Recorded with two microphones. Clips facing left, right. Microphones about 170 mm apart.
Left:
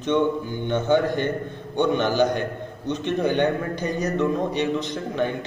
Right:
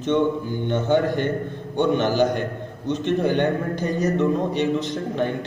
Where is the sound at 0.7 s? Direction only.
15° left (ahead or behind).